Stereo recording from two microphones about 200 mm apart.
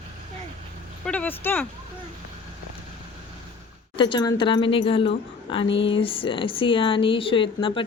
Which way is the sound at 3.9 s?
25° left (ahead or behind).